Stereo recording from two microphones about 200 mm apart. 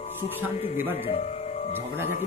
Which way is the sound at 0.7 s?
10° right (ahead or behind).